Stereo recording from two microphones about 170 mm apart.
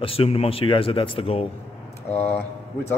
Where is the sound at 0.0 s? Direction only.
35° left (ahead or behind).